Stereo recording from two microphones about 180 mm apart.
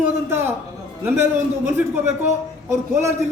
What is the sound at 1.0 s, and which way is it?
A man's voice, 15° right (ahead or behind).